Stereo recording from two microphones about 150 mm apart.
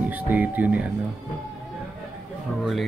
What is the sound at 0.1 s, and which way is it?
Speech, 10° right (ahead or behind).